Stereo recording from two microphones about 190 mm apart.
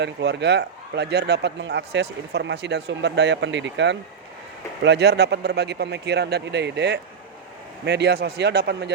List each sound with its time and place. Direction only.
0.0 s speech: 65° right (ahead or behind)